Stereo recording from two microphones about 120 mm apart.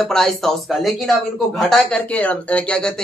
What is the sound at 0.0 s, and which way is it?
Speech, 5° left (ahead or behind).